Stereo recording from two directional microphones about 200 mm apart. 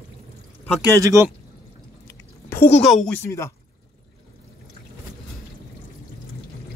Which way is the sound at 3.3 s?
15° left (ahead or behind).